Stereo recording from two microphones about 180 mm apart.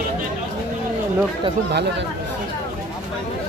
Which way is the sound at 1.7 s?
70° right (ahead or behind).